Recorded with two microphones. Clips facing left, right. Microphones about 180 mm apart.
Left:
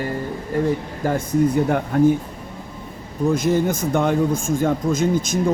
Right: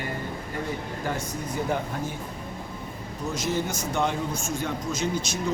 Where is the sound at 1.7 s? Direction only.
60° left (ahead or behind).